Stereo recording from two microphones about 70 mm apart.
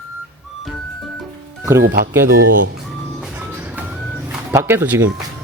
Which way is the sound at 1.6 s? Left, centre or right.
Right.